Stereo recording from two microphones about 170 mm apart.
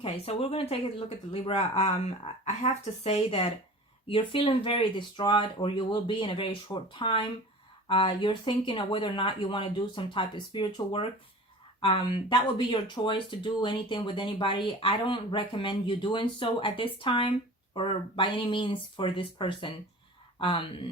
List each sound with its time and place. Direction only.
0.0 s speech: 35° left (ahead or behind)